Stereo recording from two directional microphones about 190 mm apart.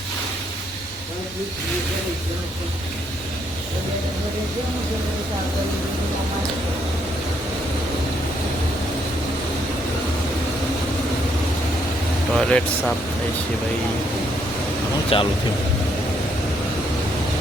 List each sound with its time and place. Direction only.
12.3 s speech: 5° left (ahead or behind)
15.1 s speech: 30° left (ahead or behind)